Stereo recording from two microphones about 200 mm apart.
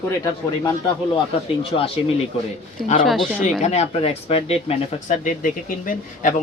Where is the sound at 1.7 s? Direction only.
30° left (ahead or behind).